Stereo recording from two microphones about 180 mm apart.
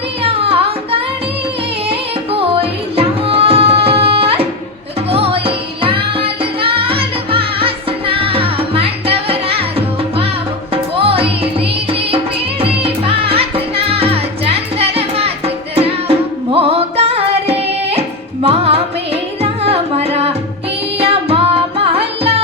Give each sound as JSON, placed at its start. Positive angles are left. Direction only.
{"t": 0.2, "sound": "music", "side_deg": -30}